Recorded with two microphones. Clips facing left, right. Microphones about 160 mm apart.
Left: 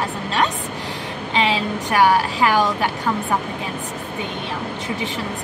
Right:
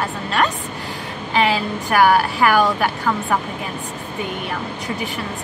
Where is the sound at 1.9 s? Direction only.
25° left (ahead or behind).